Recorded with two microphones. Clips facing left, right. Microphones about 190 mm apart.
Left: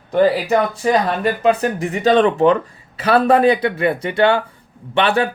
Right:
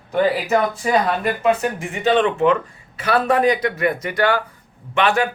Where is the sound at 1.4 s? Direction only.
35° left (ahead or behind).